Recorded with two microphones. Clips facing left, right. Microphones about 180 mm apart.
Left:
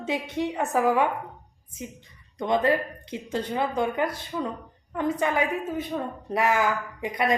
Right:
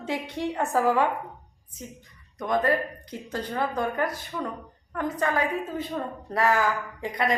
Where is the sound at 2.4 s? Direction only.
25° left (ahead or behind).